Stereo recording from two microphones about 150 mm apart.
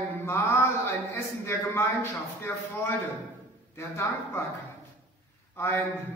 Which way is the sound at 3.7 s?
20° left (ahead or behind).